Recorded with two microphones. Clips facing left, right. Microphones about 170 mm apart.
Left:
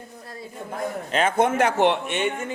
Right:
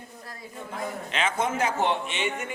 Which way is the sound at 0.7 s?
50° left (ahead or behind).